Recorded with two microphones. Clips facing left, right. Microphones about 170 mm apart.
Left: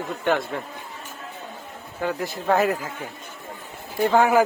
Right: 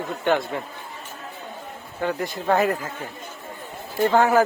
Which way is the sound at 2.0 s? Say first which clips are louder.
Right 1 dB; 5° left (ahead or behind).